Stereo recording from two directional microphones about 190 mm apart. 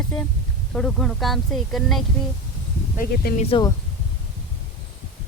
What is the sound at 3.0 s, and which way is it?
Speech, 50° left (ahead or behind).